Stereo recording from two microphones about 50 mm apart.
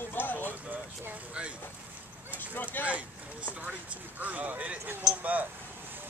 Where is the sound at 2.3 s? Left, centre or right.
Left.